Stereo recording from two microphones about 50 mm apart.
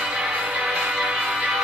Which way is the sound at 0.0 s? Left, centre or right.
Centre.